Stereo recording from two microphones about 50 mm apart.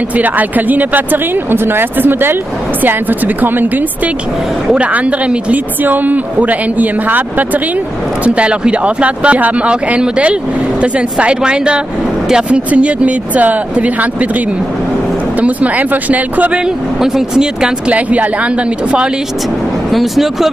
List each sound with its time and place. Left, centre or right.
0.1 s speech: right
4.7 s speech: right
5.8 s speech: right
16.5 s speech: centre
17.9 s speech: right
19.9 s speech: centre